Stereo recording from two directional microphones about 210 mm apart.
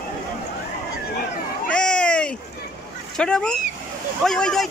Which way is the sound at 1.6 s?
5° left (ahead or behind).